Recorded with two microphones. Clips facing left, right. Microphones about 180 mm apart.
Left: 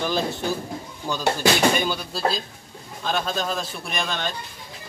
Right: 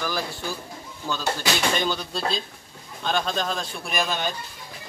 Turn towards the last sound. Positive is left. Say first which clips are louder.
# right 1 dB
turn(degrees=-5)  # may be behind; listen again after turning